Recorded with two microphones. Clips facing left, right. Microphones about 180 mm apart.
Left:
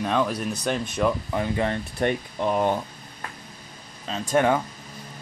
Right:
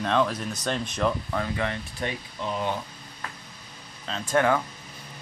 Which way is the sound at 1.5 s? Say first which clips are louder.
Left 4 dB; 40° left (ahead or behind).